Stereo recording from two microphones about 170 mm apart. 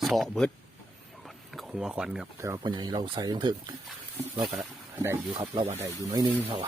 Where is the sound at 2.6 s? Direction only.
25° right (ahead or behind).